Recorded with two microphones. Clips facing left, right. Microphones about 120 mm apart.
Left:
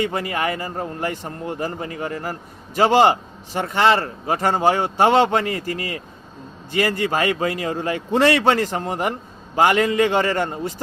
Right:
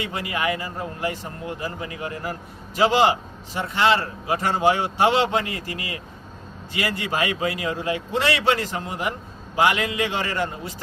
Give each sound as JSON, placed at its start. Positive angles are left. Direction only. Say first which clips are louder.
{"t": 0.0, "sound": "a man's voice", "louder": "left 4 dB", "side_deg": 45}